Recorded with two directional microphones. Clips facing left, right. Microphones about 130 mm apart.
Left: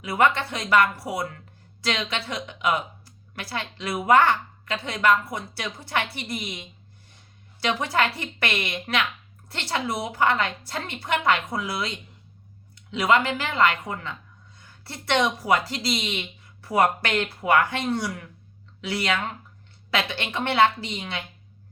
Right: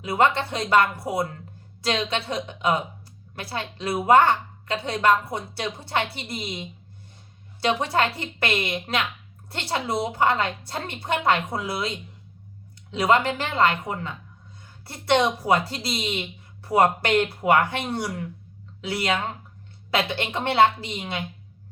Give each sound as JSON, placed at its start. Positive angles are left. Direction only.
{"t": 0.0, "sound": "a woman's voice", "side_deg": -25}
{"t": 12.9, "sound": "a woman's voice", "side_deg": -30}